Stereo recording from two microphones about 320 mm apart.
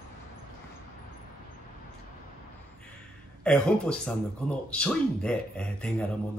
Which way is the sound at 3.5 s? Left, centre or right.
Centre.